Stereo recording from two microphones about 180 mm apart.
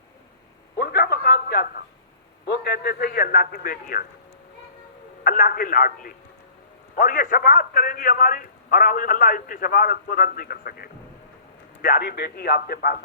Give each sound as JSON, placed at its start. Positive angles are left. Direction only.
{"t": 0.8, "sound": "a sound", "side_deg": 60}
{"t": 2.5, "sound": "a man's voice", "side_deg": 65}
{"t": 5.2, "sound": "a man's voice", "side_deg": 50}